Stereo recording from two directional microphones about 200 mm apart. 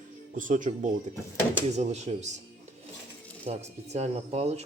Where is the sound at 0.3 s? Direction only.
40° right (ahead or behind).